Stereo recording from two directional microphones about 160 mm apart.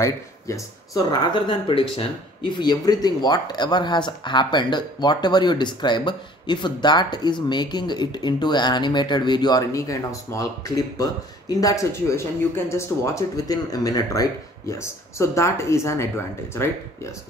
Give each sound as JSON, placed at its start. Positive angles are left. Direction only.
{"t": 0.0, "sound": "speech", "side_deg": 20}
{"t": 1.3, "sound": "speech", "side_deg": 35}